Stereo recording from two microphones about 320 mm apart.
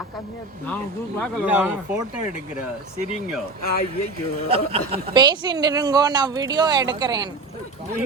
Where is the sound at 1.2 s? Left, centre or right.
Centre.